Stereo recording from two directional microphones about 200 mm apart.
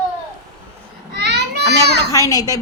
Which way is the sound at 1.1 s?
55° right (ahead or behind).